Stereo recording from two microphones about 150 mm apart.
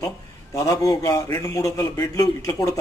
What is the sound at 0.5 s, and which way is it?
Speech, 20° left (ahead or behind).